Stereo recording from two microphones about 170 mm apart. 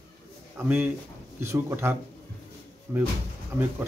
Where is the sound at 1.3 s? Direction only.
15° right (ahead or behind).